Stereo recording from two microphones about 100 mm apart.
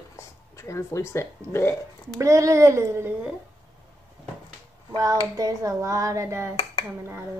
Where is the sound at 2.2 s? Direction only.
30° right (ahead or behind).